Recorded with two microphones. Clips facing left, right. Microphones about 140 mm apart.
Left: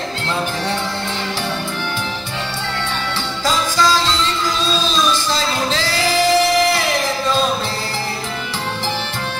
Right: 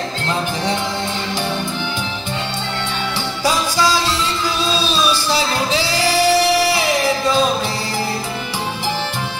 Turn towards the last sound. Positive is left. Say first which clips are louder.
# right 2 dB
turn(degrees=-10)  # may be behind; listen again after turning